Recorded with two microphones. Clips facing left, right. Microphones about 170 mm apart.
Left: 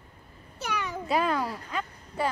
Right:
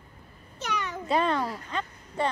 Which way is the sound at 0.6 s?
10° left (ahead or behind).